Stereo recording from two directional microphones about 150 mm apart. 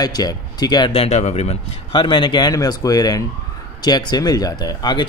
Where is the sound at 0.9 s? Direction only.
40° left (ahead or behind).